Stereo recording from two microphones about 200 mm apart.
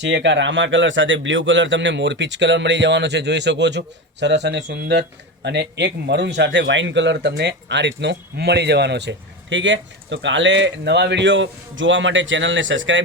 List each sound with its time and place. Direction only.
0.0 s speech: 65° right (ahead or behind)